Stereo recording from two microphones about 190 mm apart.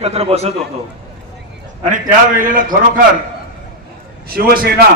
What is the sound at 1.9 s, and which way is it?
A man's voice, 45° right (ahead or behind).